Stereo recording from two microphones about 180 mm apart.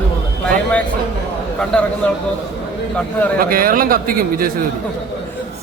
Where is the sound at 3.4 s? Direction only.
55° right (ahead or behind).